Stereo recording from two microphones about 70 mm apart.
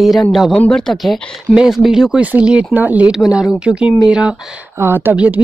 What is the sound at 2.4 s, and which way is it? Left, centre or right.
Speech, centre.